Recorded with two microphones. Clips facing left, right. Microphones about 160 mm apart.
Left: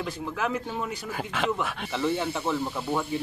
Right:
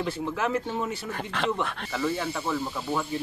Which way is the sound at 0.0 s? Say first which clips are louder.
Right 2 dB; centre (ahead or behind).